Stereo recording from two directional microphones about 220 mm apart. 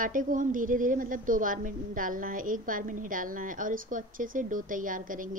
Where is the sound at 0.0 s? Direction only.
35° right (ahead or behind).